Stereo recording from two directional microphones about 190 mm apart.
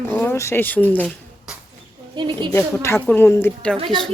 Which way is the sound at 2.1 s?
25° right (ahead or behind).